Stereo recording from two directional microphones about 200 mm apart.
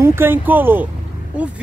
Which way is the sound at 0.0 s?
10° right (ahead or behind).